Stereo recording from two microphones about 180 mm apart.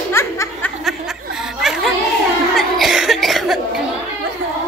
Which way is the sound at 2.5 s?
Centre (ahead or behind).